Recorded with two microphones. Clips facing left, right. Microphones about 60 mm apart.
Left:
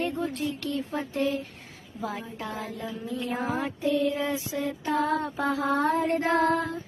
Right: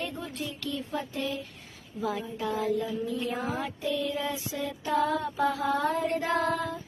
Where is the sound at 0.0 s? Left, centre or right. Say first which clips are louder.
Left 6 dB; left.